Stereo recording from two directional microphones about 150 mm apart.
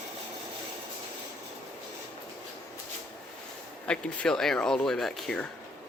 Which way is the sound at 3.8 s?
5° left (ahead or behind).